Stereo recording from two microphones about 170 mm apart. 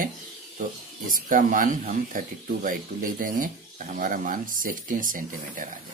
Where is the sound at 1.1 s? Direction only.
50° right (ahead or behind).